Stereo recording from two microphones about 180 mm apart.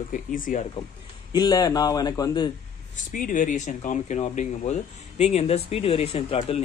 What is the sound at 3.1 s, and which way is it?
Speech, 50° left (ahead or behind).